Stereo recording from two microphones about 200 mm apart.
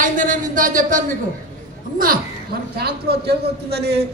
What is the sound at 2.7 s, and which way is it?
A man's voice, 50° right (ahead or behind).